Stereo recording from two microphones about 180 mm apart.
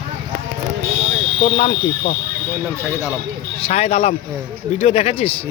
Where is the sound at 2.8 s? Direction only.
15° right (ahead or behind).